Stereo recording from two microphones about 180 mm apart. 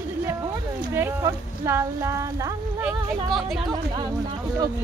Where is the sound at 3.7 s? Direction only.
20° right (ahead or behind).